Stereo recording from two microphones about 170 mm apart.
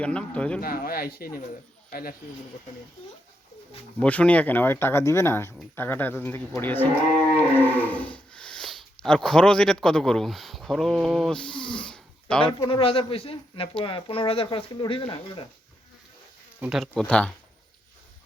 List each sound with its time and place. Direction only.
0.0 s speech: 5° left (ahead or behind)
0.6 s speech: 60° left (ahead or behind)
4.0 s speech: 10° left (ahead or behind)
7.5 s cattle: 10° left (ahead or behind)
9.0 s speech: 5° left (ahead or behind)
12.5 s speech: 30° left (ahead or behind)
16.6 s speech: 5° right (ahead or behind)